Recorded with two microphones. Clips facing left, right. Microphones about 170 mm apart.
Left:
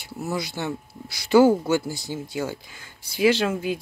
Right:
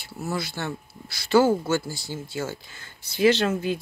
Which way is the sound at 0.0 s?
15° left (ahead or behind).